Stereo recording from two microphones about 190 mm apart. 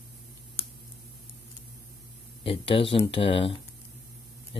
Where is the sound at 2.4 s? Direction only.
30° left (ahead or behind).